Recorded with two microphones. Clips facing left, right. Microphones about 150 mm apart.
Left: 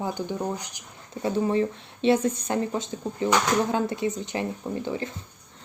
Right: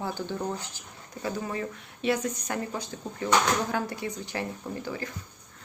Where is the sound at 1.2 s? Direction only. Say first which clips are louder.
Left 8 dB; 25° left (ahead or behind).